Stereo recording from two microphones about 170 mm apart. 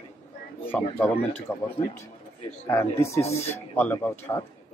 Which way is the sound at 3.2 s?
40° left (ahead or behind).